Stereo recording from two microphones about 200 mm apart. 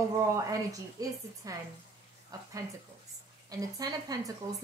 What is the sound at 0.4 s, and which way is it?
Speech, 15° right (ahead or behind).